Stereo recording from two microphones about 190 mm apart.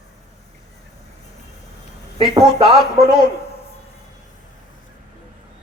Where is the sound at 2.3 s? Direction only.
30° right (ahead or behind).